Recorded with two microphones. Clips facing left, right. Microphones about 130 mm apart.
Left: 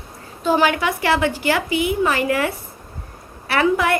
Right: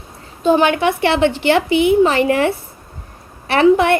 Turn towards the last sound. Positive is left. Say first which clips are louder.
# right 6 dB
turn(degrees=-25)  # may be behind; listen again after turning